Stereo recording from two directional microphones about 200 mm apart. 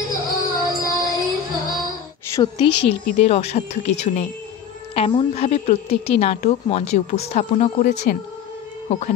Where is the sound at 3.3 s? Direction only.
30° left (ahead or behind).